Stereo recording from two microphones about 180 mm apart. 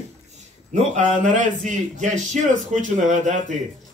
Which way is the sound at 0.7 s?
45° right (ahead or behind).